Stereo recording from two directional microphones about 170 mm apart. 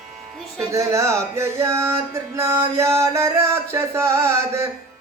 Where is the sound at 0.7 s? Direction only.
15° right (ahead or behind).